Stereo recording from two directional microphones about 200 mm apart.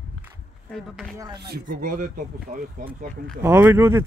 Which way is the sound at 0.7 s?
Centre (ahead or behind).